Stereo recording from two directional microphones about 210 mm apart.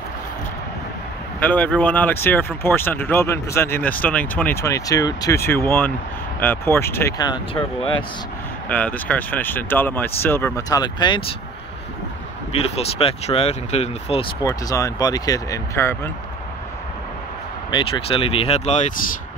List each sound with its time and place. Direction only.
1.4 s speech: 5° left (ahead or behind)
8.6 s speech: 5° left (ahead or behind)
12.5 s speech: 30° left (ahead or behind); by 16.1 s 10° left (ahead or behind)
17.6 s speech: 20° left (ahead or behind)